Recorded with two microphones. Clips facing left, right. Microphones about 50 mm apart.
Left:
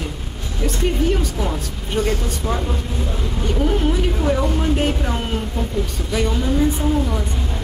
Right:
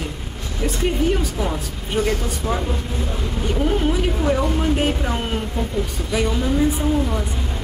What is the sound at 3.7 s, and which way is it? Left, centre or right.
A woman's voice, centre.